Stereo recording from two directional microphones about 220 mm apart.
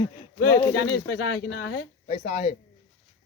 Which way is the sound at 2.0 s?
35° left (ahead or behind).